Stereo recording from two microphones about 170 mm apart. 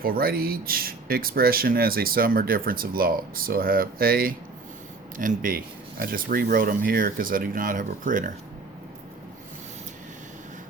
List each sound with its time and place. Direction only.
0.0 s speech: 60° right (ahead or behind)